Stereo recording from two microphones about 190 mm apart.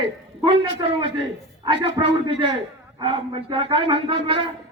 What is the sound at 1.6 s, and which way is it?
A man's voice, 25° right (ahead or behind).